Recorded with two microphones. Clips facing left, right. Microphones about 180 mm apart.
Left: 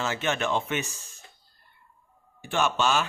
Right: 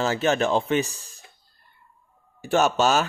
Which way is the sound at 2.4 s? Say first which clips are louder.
Right 5 dB; 40° right (ahead or behind).